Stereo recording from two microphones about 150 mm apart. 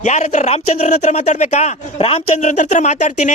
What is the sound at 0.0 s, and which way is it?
A man's voice, 50° left (ahead or behind).